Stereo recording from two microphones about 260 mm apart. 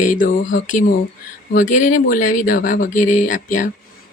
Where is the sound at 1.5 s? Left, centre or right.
Left.